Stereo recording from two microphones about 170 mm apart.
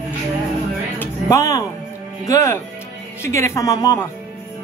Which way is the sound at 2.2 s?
20° left (ahead or behind).